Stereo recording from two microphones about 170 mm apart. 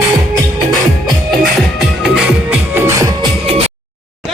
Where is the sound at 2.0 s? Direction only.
5° right (ahead or behind).